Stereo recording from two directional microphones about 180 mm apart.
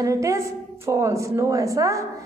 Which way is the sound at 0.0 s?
15° right (ahead or behind).